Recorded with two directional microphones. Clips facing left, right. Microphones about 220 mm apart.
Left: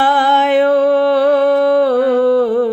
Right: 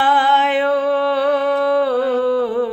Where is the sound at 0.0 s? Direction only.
45° left (ahead or behind).